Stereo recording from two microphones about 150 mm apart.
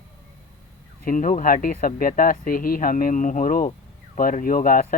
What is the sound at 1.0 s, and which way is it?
Speech, 60° left (ahead or behind).